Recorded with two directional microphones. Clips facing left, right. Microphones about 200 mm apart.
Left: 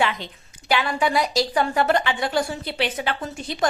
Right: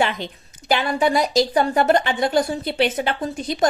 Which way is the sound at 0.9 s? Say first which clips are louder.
Right 6 dB; 45° right (ahead or behind).